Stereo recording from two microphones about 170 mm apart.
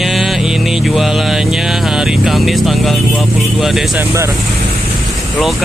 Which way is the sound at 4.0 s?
15° right (ahead or behind).